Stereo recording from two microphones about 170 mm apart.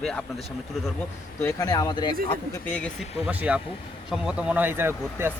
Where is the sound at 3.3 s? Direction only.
10° right (ahead or behind).